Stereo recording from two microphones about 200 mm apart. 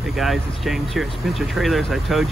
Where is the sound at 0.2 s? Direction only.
Centre (ahead or behind).